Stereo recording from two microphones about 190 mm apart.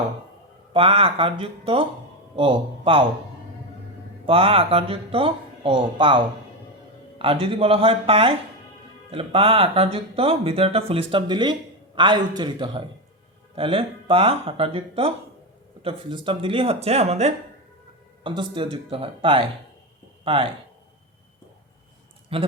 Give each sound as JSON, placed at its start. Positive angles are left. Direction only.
{"t": 0.7, "sound": "speech", "side_deg": -30}
{"t": 4.3, "sound": "speech", "side_deg": -30}
{"t": 22.3, "sound": "a man's voice", "side_deg": -30}